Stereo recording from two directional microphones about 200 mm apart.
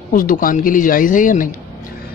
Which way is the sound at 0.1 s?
45° left (ahead or behind).